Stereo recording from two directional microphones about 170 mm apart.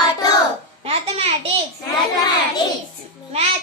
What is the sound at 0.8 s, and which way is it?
Speech, 35° right (ahead or behind).